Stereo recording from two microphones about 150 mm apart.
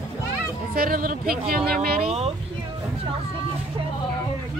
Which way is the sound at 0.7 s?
75° right (ahead or behind).